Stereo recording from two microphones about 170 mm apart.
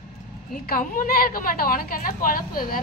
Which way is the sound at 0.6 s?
55° left (ahead or behind).